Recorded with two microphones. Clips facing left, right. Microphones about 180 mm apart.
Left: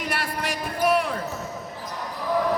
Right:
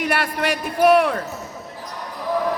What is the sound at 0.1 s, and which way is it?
Speech, 65° right (ahead or behind).